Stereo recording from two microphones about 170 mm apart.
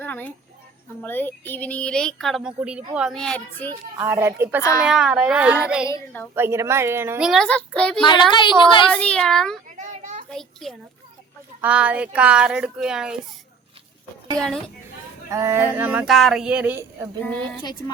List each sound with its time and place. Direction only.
0.0 s a child's voice: 10° left (ahead or behind)
4.0 s speech: 15° right (ahead or behind)
4.8 s speech: 5° right (ahead or behind)
7.2 s speech: centre (ahead or behind)
8.3 s speech: 25° left (ahead or behind)
8.9 s speech: 5° left (ahead or behind)
9.6 s children playing: 45° right (ahead or behind)
10.2 s a child's voice: centre (ahead or behind)
14.3 s speech: 5° left (ahead or behind)
15.3 s speech: 20° right (ahead or behind)
17.2 s a woman's voice: 5° left (ahead or behind)
17.6 s speech: 25° left (ahead or behind)